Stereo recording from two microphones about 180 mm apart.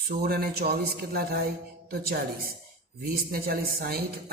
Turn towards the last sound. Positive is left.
turn(degrees=-55)  # may be behind; listen again after turning